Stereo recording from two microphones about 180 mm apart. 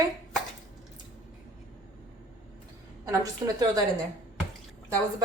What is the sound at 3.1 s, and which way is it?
Speech, 20° right (ahead or behind).